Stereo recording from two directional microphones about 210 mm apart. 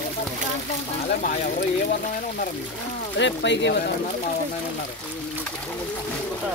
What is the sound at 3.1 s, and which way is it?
Speech, 60° left (ahead or behind).